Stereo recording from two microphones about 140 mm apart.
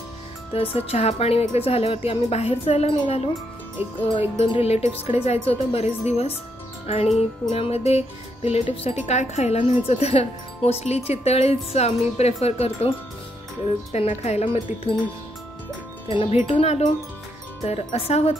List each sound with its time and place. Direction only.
0.6 s speech: 45° left (ahead or behind)
4.4 s speech: 45° left (ahead or behind)
13.9 s speech: 50° left (ahead or behind)
16.1 s speech: 45° left (ahead or behind)